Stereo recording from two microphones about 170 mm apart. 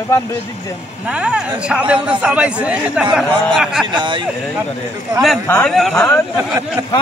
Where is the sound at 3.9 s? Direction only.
25° right (ahead or behind).